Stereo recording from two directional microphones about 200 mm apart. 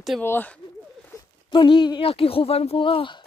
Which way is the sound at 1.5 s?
25° left (ahead or behind).